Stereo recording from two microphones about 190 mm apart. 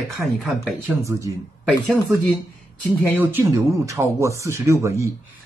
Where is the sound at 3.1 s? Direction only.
10° right (ahead or behind).